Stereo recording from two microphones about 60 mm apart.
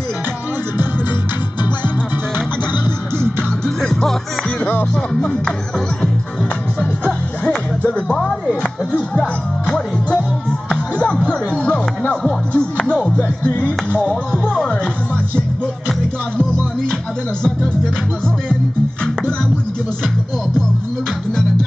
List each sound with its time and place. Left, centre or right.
3.2 s music: centre
6.8 s music: centre